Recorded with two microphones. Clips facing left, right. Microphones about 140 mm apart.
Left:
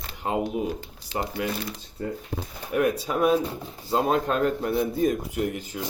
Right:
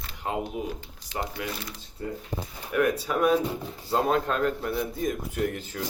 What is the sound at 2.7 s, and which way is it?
A man's voice, 25° left (ahead or behind).